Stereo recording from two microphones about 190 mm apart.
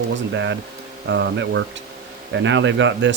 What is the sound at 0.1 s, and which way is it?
Speech, 75° right (ahead or behind).